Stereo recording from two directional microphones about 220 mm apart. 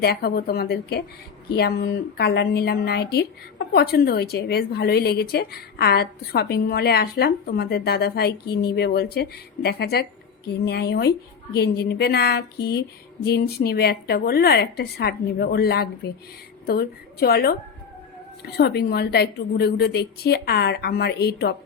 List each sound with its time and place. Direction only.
0.0 s a woman's voice: 45° left (ahead or behind)